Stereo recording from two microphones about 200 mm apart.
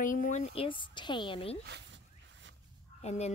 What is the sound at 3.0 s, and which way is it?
Speech, 30° left (ahead or behind).